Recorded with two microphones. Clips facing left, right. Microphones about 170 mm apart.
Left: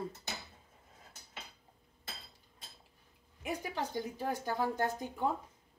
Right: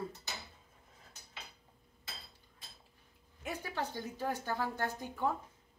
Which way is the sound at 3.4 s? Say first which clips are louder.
Left 2 dB; 15° left (ahead or behind).